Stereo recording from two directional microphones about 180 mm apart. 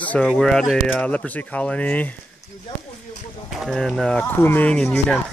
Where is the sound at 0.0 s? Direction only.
5° left (ahead or behind).